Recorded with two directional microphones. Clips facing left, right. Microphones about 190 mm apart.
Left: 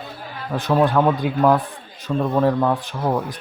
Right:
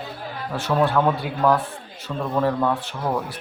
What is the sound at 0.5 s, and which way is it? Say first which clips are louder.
Speech: left 3 dB; 15° left (ahead or behind).